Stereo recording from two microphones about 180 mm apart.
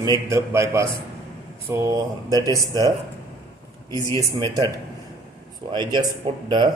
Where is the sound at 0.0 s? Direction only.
20° right (ahead or behind).